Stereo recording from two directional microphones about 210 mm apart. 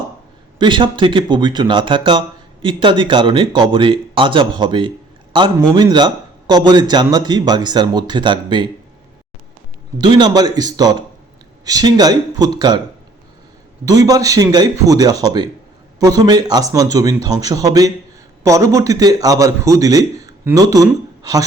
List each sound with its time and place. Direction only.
0.6 s speech: 20° right (ahead or behind)
10.0 s speech: 20° right (ahead or behind)
13.8 s a man's voice: 15° right (ahead or behind)